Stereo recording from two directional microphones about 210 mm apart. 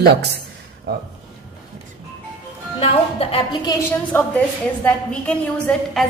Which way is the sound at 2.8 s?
30° left (ahead or behind).